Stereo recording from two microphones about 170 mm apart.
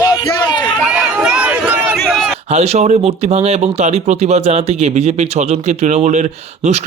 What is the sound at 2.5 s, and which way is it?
Speech, 40° right (ahead or behind).